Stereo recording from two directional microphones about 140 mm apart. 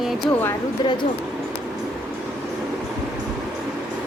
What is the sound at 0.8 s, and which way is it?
Speech, 30° left (ahead or behind).